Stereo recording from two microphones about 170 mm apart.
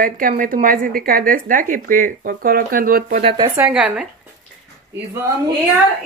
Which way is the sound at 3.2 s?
30° right (ahead or behind).